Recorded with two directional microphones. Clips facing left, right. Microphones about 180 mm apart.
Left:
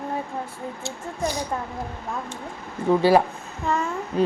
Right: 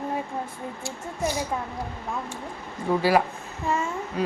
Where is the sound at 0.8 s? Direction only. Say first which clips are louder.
Left 1 dB; 15° left (ahead or behind).